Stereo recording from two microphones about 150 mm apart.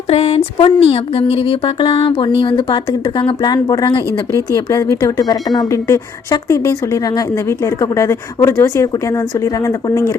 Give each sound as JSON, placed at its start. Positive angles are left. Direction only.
{"t": 0.1, "sound": "speech", "side_deg": 40}